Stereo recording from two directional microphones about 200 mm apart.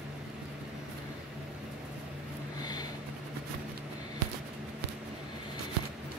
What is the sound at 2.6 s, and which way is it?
Vehicle, 20° left (ahead or behind).